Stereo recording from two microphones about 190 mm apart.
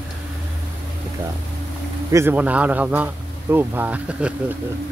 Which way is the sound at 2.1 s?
15° right (ahead or behind).